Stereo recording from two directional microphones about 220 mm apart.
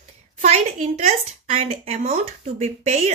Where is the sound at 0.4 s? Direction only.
30° right (ahead or behind).